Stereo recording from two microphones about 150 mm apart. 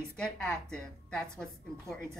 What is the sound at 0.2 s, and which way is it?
A woman's voice, 5° left (ahead or behind).